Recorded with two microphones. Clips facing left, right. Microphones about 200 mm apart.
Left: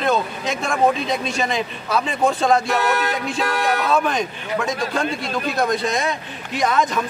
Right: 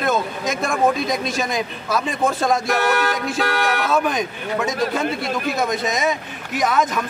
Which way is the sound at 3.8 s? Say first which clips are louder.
Even; centre (ahead or behind).